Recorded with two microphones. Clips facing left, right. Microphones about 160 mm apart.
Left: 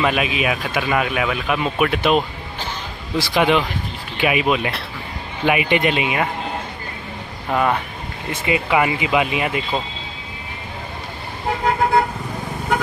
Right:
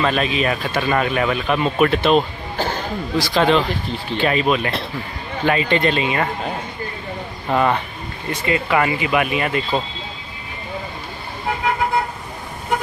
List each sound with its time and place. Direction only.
0.0 s speech: 10° left (ahead or behind)
7.4 s speech: centre (ahead or behind)
8.3 s speech: 15° left (ahead or behind)